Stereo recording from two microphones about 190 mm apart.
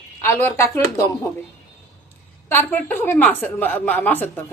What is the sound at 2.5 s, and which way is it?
A woman's voice, 10° left (ahead or behind).